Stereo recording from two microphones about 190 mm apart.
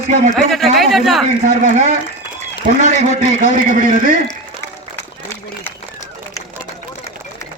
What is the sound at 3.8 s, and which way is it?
Speech, 45° right (ahead or behind).